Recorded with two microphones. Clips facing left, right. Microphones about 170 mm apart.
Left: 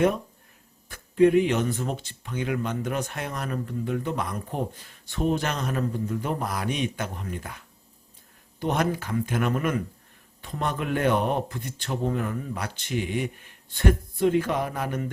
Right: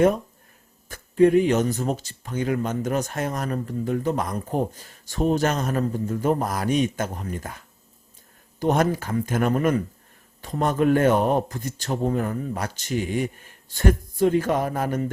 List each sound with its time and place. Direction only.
0.9 s speech: 40° right (ahead or behind)